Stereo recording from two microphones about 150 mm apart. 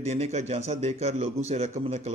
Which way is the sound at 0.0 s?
45° right (ahead or behind).